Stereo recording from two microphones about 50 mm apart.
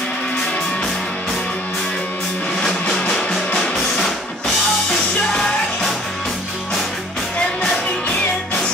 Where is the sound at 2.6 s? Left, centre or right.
Centre.